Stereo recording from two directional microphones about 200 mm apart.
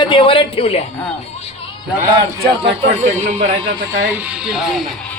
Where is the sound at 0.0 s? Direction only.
25° left (ahead or behind).